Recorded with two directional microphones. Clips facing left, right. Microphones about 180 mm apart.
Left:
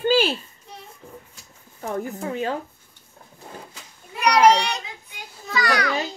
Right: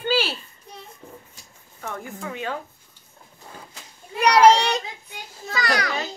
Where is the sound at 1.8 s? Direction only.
35° left (ahead or behind).